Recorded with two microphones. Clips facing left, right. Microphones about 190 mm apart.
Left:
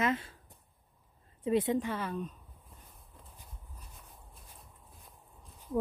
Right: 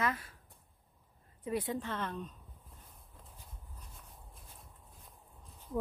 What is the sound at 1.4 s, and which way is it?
Speech, 25° left (ahead or behind).